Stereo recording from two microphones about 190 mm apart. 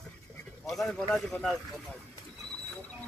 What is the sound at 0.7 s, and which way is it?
A man's voice, centre (ahead or behind).